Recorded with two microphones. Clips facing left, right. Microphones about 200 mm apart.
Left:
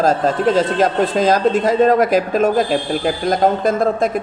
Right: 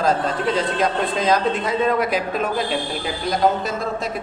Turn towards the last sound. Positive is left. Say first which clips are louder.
# left 9 dB
turn(degrees=50)  # may be behind; listen again after turning